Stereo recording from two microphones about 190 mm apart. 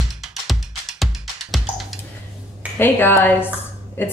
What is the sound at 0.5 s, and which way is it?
Music, centre (ahead or behind).